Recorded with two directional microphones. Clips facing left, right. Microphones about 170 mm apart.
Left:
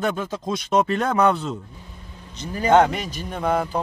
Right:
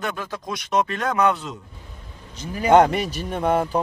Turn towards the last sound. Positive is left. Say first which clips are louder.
# right 2 dB
turn(degrees=-10)  # may be behind; listen again after turning